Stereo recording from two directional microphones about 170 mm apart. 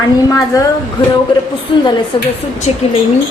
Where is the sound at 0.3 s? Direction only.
20° left (ahead or behind).